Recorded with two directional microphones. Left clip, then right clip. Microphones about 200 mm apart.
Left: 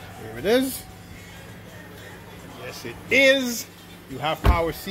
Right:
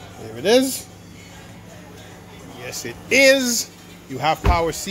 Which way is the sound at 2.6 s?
20° right (ahead or behind).